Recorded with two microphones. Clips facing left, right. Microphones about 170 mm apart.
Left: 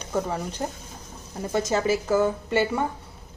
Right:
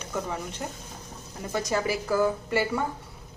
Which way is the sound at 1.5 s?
25° left (ahead or behind).